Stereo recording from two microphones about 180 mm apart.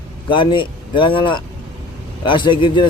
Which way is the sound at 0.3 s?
25° left (ahead or behind).